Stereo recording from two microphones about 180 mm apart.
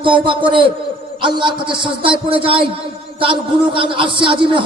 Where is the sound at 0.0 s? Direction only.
25° right (ahead or behind).